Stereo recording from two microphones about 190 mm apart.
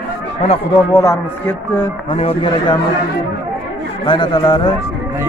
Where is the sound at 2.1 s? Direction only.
30° left (ahead or behind).